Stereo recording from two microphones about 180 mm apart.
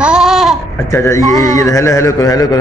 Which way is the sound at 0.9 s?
15° left (ahead or behind).